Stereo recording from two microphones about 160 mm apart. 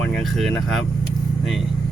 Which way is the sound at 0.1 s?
Centre (ahead or behind).